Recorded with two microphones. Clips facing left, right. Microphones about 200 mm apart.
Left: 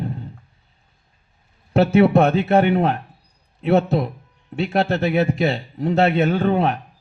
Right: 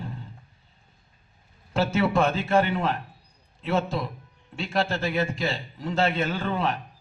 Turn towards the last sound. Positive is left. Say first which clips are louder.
# left 8 dB
turn(degrees=60)  # may be behind; listen again after turning